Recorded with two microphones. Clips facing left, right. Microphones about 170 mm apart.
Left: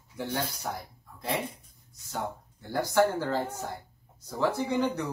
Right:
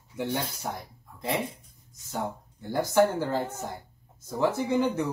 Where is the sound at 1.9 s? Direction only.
15° right (ahead or behind).